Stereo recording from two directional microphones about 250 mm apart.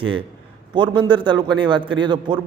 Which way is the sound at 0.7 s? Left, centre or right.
Centre.